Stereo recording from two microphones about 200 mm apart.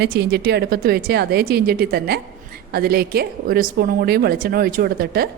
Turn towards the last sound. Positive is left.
turn(degrees=-50)  # may be behind; listen again after turning